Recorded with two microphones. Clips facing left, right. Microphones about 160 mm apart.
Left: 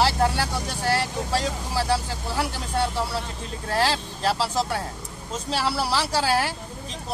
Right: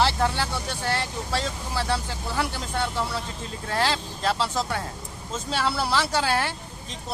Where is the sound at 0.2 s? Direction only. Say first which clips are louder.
Left 2 dB; 35° left (ahead or behind).